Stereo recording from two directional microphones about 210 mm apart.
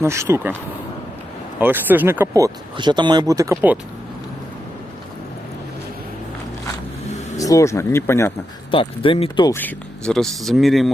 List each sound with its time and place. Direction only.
0.0 s speech: 15° right (ahead or behind)
1.5 s speech: 10° right (ahead or behind)
7.3 s speech: 15° left (ahead or behind)
8.7 s speech: 25° left (ahead or behind)
9.6 s speech: 5° left (ahead or behind)